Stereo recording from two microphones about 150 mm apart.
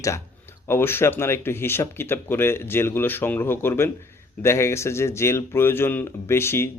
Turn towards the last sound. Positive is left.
turn(degrees=15)  # may be behind; listen again after turning